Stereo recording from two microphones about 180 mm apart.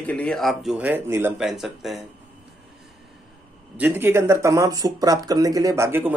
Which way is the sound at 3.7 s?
10° right (ahead or behind).